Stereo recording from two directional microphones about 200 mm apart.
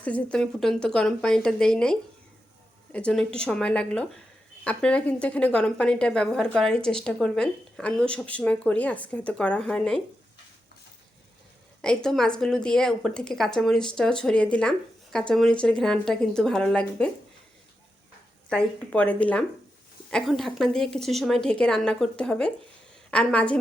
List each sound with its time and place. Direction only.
0.0 s a woman's voice: 5° left (ahead or behind)
11.8 s a woman's voice: 5° left (ahead or behind)
18.4 s a woman's voice: 5° left (ahead or behind)